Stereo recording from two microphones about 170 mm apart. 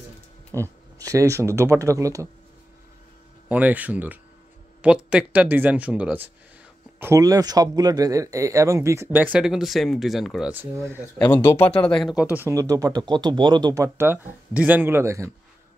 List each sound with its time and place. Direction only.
0.5 s speech: 20° right (ahead or behind)
3.4 s speech: 10° right (ahead or behind)
11.1 s speech: 10° left (ahead or behind); by 15.3 s 15° right (ahead or behind)